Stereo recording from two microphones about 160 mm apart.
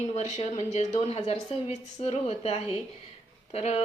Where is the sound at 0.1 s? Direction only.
45° left (ahead or behind).